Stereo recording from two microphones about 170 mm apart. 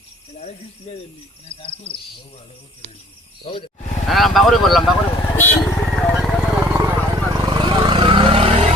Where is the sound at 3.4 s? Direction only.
30° left (ahead or behind).